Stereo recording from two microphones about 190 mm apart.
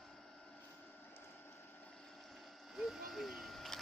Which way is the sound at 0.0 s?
Centre (ahead or behind).